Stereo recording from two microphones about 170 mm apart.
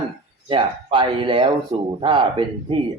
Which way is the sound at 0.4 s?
30° right (ahead or behind).